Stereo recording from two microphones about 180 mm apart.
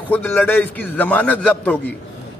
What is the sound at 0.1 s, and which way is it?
A man's voice, 10° left (ahead or behind).